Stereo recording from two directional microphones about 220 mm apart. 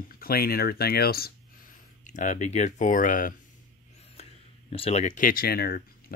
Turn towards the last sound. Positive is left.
turn(degrees=40)  # may be behind; listen again after turning